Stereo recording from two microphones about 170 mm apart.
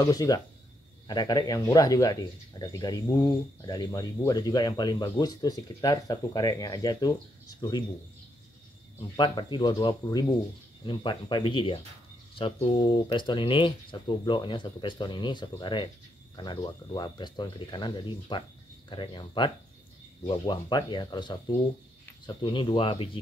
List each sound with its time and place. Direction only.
0.0 s speech: 20° left (ahead or behind)
9.1 s speech: 30° left (ahead or behind)